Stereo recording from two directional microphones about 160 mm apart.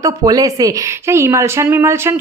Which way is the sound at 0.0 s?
20° right (ahead or behind).